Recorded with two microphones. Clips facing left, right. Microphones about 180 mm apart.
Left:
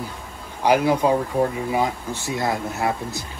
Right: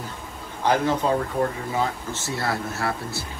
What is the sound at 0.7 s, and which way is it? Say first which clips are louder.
Speech: left 4 dB; 10° left (ahead or behind).